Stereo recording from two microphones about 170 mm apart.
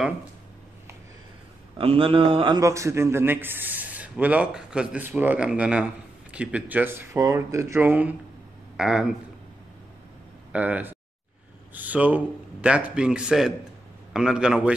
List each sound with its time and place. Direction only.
1.8 s a man's voice: 35° right (ahead or behind); by 9.1 s 5° right (ahead or behind)
10.5 s speech: 10° right (ahead or behind)
11.7 s a sound: 10° right (ahead or behind)
12.6 s a man's voice: 5° right (ahead or behind)